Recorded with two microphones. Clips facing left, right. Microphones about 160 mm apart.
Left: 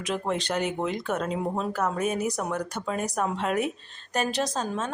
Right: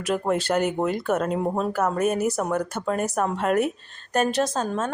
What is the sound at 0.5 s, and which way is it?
Speech, 50° right (ahead or behind).